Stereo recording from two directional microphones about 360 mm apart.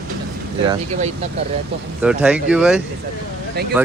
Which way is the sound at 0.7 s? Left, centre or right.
Centre.